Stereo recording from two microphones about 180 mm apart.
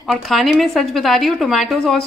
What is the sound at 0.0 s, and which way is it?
A woman's voice, centre (ahead or behind).